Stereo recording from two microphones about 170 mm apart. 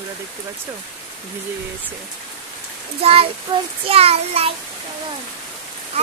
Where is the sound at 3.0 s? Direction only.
35° right (ahead or behind).